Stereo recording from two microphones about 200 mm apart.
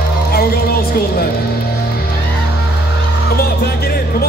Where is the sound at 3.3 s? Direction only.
50° left (ahead or behind).